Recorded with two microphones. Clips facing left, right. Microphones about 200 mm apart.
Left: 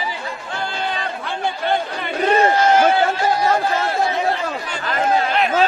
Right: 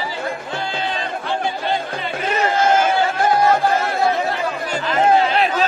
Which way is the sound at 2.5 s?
50° right (ahead or behind).